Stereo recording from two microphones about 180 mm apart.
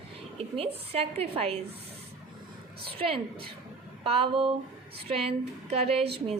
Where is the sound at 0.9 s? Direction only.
35° right (ahead or behind).